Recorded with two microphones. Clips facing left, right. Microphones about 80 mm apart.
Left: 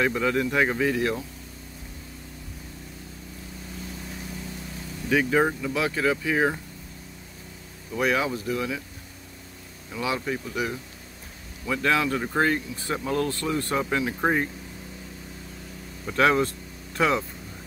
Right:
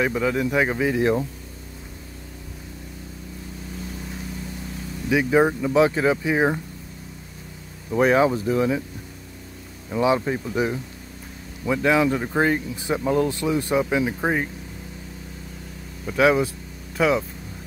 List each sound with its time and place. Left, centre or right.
0.0 s speech: centre
5.1 s speech: centre
5.6 s speech: right
7.9 s speech: right
9.8 s speech: right
11.6 s speech: centre
16.1 s speech: centre